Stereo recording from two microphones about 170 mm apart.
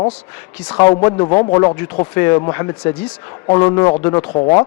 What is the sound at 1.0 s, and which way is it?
A man's voice, 20° left (ahead or behind).